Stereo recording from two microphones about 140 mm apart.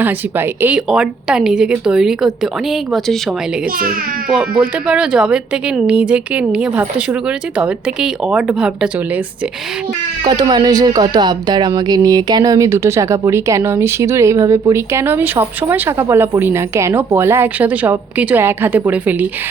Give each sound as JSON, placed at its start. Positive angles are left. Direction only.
{"t": 0.0, "sound": "a woman's voice", "side_deg": -15}
{"t": 0.8, "sound": "speech", "side_deg": -5}
{"t": 4.6, "sound": "a woman's voice", "side_deg": -5}
{"t": 10.2, "sound": "speech", "side_deg": -30}